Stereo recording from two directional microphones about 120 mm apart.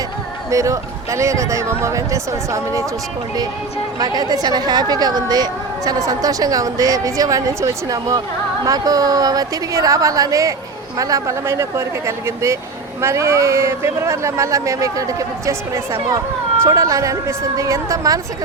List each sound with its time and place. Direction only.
0.5 s speech: 25° right (ahead or behind)
4.0 s a woman's voice: 35° right (ahead or behind)